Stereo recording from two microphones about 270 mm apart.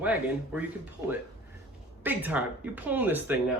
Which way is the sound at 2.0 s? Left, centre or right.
Centre.